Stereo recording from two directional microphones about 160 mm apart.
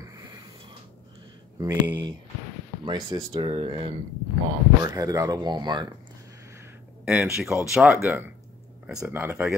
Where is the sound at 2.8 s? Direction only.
30° right (ahead or behind).